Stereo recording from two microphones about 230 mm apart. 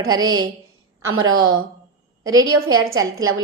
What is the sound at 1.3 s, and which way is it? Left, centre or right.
Speech, right.